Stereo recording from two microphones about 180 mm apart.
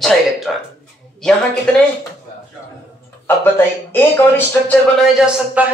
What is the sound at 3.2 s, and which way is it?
Speech, 10° left (ahead or behind).